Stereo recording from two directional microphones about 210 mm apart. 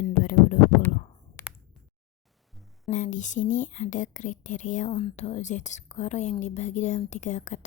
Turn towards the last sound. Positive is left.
turn(degrees=35)  # may be behind; listen again after turning